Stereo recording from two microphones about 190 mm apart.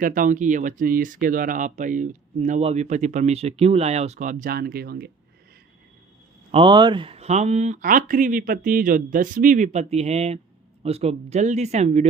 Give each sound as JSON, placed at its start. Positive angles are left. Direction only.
{"t": 0.0, "sound": "speech", "side_deg": -45}
{"t": 6.5, "sound": "speech", "side_deg": -25}